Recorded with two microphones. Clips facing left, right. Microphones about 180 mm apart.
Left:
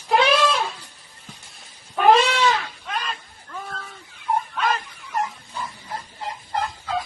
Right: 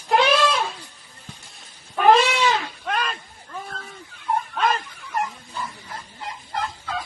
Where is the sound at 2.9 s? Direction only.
55° right (ahead or behind).